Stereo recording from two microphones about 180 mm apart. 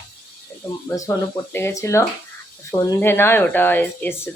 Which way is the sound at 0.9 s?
20° left (ahead or behind).